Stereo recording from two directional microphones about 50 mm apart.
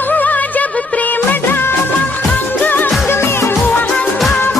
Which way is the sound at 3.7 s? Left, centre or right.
Left.